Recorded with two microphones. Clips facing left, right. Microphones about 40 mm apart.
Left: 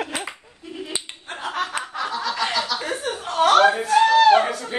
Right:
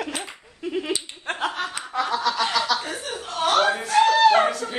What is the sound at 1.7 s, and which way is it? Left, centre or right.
Snicker, left.